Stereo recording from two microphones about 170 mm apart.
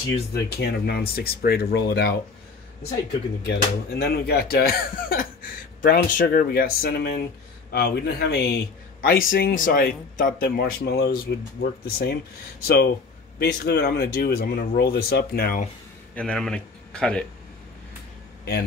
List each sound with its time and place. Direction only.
0.3 s speech: 70° left (ahead or behind)
3.4 s a man's voice: 70° left (ahead or behind)
16.2 s speech: 5° left (ahead or behind)